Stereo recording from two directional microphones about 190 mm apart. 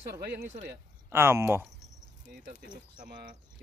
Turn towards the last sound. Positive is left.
turn(degrees=-45)  # may be behind; listen again after turning